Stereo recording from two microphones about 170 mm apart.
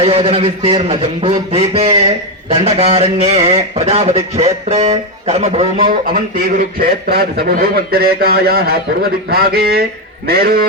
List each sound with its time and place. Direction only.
0.0 s speech: 35° right (ahead or behind)
6.1 s a man's voice: 60° right (ahead or behind)